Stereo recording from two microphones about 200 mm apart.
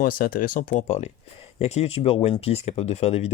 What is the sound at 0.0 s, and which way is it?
Speech, 45° left (ahead or behind).